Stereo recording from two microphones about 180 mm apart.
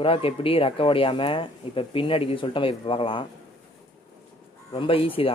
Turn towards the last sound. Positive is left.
turn(degrees=30)  # may be behind; listen again after turning